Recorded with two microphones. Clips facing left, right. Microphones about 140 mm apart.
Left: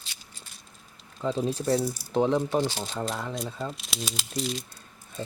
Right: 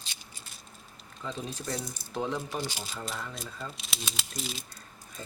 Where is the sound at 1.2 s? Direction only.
35° left (ahead or behind).